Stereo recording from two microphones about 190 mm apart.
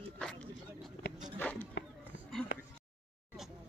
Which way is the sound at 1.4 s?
5° left (ahead or behind).